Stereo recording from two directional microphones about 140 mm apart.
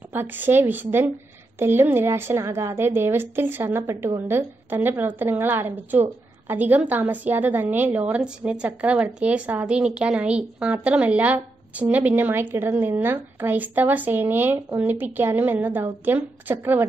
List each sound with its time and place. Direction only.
0.1 s a woman's voice: 15° right (ahead or behind)